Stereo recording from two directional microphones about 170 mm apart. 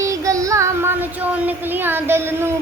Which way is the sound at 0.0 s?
20° right (ahead or behind).